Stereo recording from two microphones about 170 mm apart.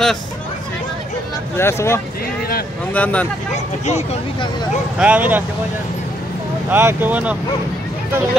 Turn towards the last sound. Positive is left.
turn(degrees=-10)  # may be behind; listen again after turning